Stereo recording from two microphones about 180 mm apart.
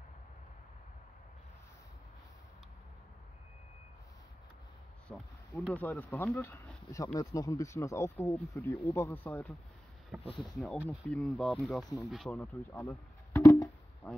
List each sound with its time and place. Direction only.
5.1 s speech: 5° left (ahead or behind)